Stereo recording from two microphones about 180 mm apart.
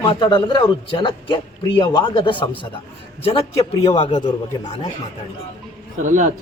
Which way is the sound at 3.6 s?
20° left (ahead or behind).